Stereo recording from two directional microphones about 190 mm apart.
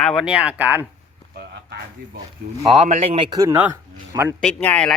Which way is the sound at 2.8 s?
35° right (ahead or behind).